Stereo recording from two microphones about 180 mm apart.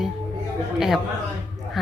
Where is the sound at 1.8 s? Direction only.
Centre (ahead or behind).